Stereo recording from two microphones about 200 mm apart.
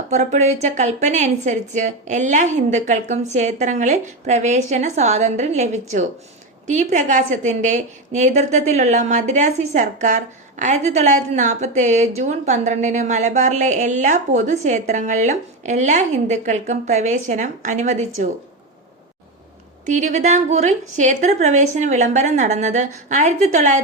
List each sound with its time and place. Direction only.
0.1 s a woman's voice: 35° right (ahead or behind)
19.8 s a woman's voice: 35° right (ahead or behind)